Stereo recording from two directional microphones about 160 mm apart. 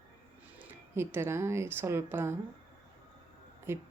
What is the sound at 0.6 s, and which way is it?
Speech, 15° right (ahead or behind).